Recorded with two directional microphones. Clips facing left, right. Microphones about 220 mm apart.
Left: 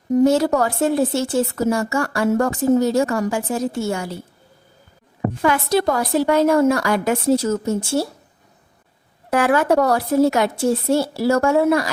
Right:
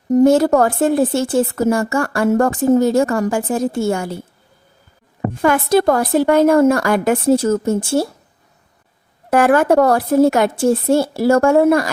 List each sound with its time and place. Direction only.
0.1 s speech: 50° right (ahead or behind)
5.4 s speech: 50° right (ahead or behind)
9.3 s speech: 50° right (ahead or behind)